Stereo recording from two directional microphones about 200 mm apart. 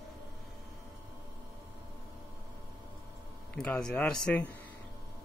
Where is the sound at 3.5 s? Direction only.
5° left (ahead or behind).